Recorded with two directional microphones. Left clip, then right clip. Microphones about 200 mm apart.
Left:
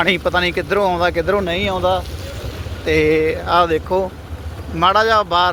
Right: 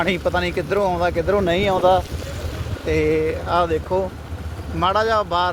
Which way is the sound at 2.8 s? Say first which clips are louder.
Left 4 dB; 5° left (ahead or behind).